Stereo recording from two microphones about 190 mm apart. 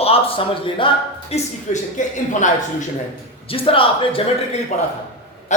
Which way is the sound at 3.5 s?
30° left (ahead or behind).